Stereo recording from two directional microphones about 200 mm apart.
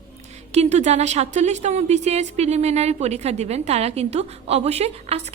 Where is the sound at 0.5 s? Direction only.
35° right (ahead or behind).